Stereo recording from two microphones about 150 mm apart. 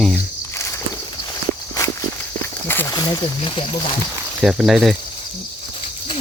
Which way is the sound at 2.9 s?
30° left (ahead or behind).